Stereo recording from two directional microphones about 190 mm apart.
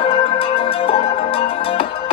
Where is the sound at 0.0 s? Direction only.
30° left (ahead or behind).